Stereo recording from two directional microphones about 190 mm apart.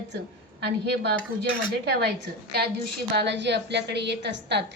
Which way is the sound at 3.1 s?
65° right (ahead or behind).